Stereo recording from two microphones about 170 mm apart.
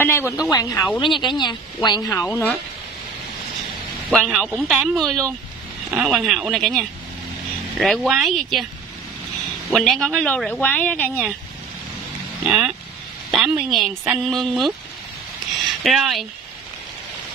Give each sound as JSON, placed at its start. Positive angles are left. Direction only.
{"t": 0.0, "sound": "speech", "side_deg": 15}
{"t": 4.1, "sound": "speech", "side_deg": 0}
{"t": 9.7, "sound": "speech", "side_deg": 0}
{"t": 12.4, "sound": "speech", "side_deg": 0}
{"t": 15.8, "sound": "speech", "side_deg": 0}